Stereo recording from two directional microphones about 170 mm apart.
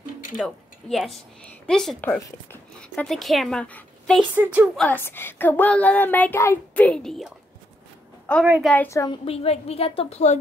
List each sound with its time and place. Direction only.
0.4 s speech: centre (ahead or behind)
4.2 s speech: 10° right (ahead or behind)
4.7 s speech: 10° left (ahead or behind)
8.6 s speech: 10° left (ahead or behind)
9.2 s a woman's voice: 35° left (ahead or behind)